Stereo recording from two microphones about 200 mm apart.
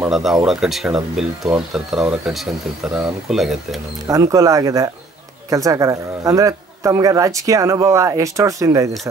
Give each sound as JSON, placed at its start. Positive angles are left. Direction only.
{"t": 0.1, "sound": "speech", "side_deg": 0}
{"t": 4.1, "sound": "a man's voice", "side_deg": -15}